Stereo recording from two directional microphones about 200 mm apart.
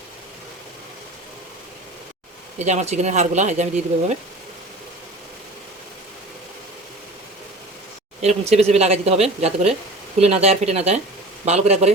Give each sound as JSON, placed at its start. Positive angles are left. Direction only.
{"t": 2.6, "sound": "speech", "side_deg": -35}
{"t": 8.2, "sound": "speech", "side_deg": -35}